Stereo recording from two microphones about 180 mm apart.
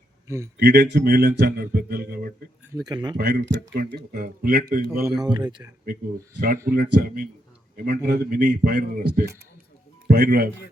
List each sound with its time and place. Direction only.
0.3 s a man's voice: 15° right (ahead or behind)
0.6 s speech: 65° right (ahead or behind)
2.7 s speech: 20° right (ahead or behind)
3.2 s speech: 70° right (ahead or behind)
3.9 s speech: 55° right (ahead or behind)
5.2 s speech: 25° right (ahead or behind)
5.8 s speech: 55° right (ahead or behind)